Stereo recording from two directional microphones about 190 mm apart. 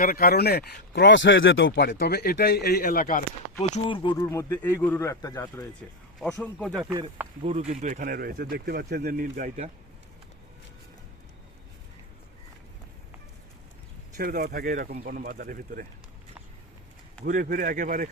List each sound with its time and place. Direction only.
0.0 s speech: 50° left (ahead or behind)
3.6 s a man's voice: 25° left (ahead or behind)
6.1 s speech: 5° left (ahead or behind)
6.8 s speech: 15° right (ahead or behind)
7.4 s speech: 35° right (ahead or behind)
14.2 s speech: 50° right (ahead or behind)
17.2 s speech: 45° right (ahead or behind)